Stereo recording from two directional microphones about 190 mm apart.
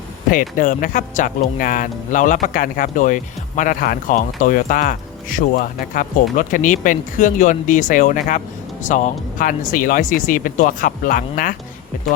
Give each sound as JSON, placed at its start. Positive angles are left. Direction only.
{"t": 0.3, "sound": "speech", "side_deg": 45}